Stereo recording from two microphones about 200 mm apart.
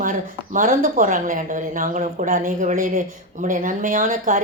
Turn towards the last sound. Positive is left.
turn(degrees=-40)  # may be behind; listen again after turning